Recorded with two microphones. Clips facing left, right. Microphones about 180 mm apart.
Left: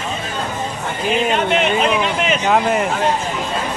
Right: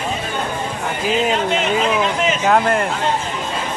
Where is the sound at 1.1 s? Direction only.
65° left (ahead or behind).